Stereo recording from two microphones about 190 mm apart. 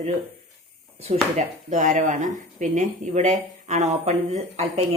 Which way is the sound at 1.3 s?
40° right (ahead or behind).